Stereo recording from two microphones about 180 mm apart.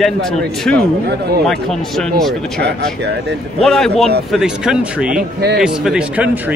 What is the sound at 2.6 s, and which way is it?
Speech, 70° right (ahead or behind).